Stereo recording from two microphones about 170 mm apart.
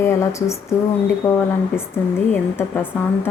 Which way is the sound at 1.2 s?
15° left (ahead or behind).